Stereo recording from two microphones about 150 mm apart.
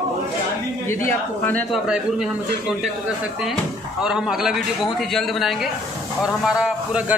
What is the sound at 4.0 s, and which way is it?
A man's voice, 5° right (ahead or behind).